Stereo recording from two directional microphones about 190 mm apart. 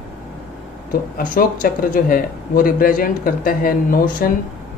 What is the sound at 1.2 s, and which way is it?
A man's voice, 45° left (ahead or behind).